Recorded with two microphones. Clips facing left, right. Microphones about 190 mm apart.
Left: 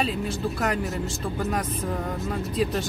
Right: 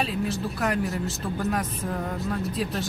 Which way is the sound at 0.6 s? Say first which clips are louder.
Right 2 dB; centre (ahead or behind).